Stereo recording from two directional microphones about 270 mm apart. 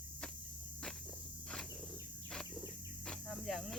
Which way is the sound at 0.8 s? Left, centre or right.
Centre.